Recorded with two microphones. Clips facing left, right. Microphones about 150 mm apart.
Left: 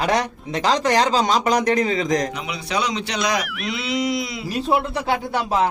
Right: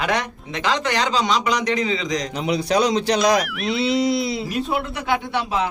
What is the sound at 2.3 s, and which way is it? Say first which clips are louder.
A man's voice: right 6 dB; 35° right (ahead or behind).